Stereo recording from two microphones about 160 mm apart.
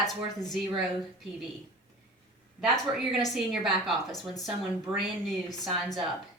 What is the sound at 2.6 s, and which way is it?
A woman's voice, centre (ahead or behind).